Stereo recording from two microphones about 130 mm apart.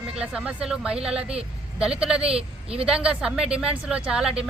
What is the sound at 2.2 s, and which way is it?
Speech, 50° right (ahead or behind).